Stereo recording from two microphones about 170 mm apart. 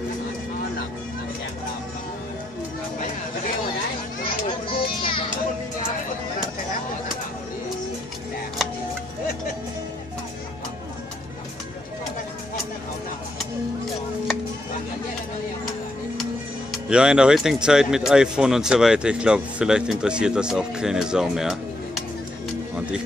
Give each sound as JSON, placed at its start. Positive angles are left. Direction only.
{"t": 4.6, "sound": "children playing", "side_deg": 30}
{"t": 16.7, "sound": "speech", "side_deg": -5}